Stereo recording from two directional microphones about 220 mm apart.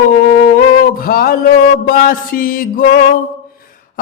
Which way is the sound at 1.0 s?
40° left (ahead or behind).